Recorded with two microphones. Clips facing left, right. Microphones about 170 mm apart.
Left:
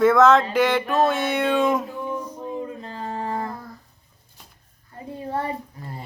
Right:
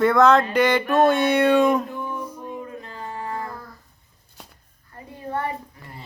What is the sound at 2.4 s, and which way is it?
Music, 30° left (ahead or behind).